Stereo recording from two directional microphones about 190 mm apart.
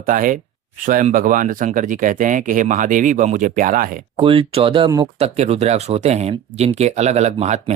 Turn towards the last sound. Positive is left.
turn(degrees=-35)  # may be behind; listen again after turning